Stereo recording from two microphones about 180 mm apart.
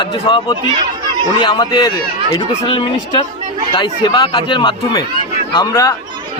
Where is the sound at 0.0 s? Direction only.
25° left (ahead or behind).